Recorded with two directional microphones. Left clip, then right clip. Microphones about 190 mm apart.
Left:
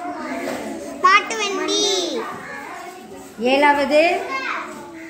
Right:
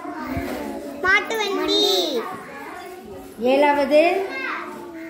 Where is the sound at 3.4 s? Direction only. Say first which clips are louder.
Left 2 dB; 10° left (ahead or behind).